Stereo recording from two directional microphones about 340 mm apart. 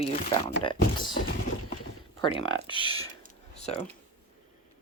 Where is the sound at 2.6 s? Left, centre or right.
Centre.